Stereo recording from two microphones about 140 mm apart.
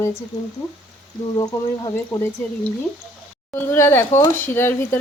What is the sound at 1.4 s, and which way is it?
Speech, 25° left (ahead or behind).